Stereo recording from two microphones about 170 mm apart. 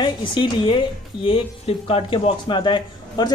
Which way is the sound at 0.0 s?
30° left (ahead or behind).